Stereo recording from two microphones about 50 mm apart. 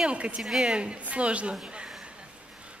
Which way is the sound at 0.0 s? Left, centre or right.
Right.